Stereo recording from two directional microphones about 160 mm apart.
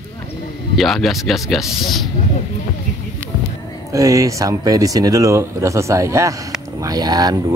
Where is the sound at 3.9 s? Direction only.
20° right (ahead or behind).